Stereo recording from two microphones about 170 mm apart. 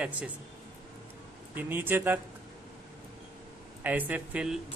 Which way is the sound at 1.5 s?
10° right (ahead or behind).